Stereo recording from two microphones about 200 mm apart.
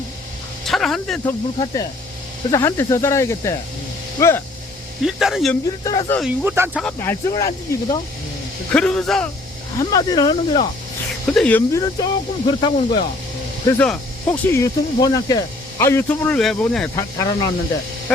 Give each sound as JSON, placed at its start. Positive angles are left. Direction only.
{"t": 0.6, "sound": "a sound", "side_deg": 0}
{"t": 1.5, "sound": "speech", "side_deg": 15}
{"t": 5.0, "sound": "a man's voice", "side_deg": 0}
{"t": 5.8, "sound": "speech", "side_deg": 20}
{"t": 6.4, "sound": "speech", "side_deg": -10}
{"t": 6.8, "sound": "speech", "side_deg": 10}
{"t": 8.7, "sound": "a man's voice", "side_deg": 5}
{"t": 9.7, "sound": "speech", "side_deg": 20}
{"t": 11.3, "sound": "speech", "side_deg": 10}
{"t": 13.7, "sound": "speech", "side_deg": 5}
{"t": 16.9, "sound": "speech", "side_deg": 15}